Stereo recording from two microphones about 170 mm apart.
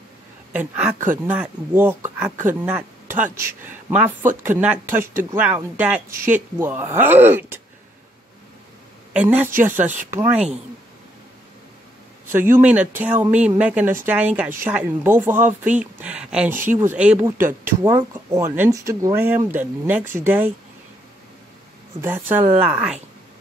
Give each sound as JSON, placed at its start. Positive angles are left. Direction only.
{"t": 0.5, "sound": "speech", "side_deg": -10}
{"t": 0.9, "sound": "speech", "side_deg": -50}
{"t": 1.2, "sound": "speech", "side_deg": -10}
{"t": 9.1, "sound": "speech", "side_deg": -10}
{"t": 12.3, "sound": "speech", "side_deg": -15}
{"t": 22.0, "sound": "speech", "side_deg": -15}